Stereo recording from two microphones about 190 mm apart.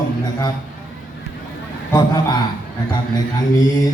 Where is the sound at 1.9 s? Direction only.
25° left (ahead or behind).